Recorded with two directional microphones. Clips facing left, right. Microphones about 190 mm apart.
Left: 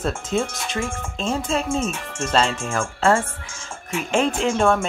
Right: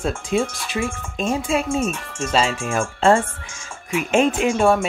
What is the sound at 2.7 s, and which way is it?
Speech, 25° right (ahead or behind).